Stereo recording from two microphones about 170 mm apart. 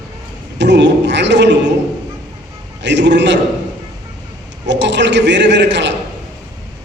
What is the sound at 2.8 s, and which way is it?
Speech, 90° right.